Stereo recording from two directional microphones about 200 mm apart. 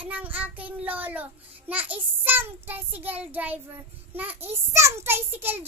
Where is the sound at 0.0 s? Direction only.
10° right (ahead or behind).